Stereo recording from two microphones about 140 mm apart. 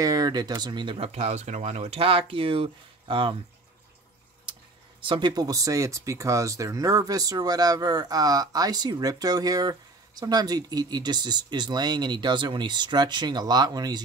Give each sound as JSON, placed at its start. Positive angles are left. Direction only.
{"t": 0.0, "sound": "speech", "side_deg": -25}
{"t": 5.0, "sound": "speech", "side_deg": -35}